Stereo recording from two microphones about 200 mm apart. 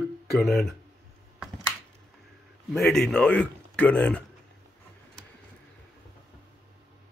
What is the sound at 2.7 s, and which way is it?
A man's voice, centre (ahead or behind).